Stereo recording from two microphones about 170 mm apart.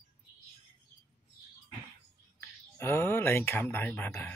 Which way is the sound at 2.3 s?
15° left (ahead or behind).